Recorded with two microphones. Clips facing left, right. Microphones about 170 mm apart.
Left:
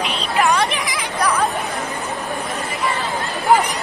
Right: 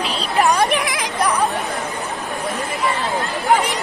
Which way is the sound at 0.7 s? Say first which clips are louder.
Right 4 dB; 60° right (ahead or behind).